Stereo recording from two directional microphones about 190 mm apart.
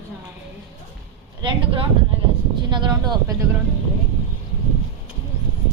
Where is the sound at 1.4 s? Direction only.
25° right (ahead or behind).